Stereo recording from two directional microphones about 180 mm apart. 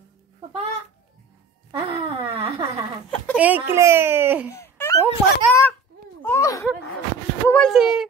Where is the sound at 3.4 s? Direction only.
10° right (ahead or behind).